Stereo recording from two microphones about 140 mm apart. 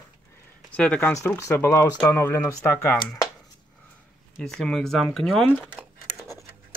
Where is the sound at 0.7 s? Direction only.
10° left (ahead or behind).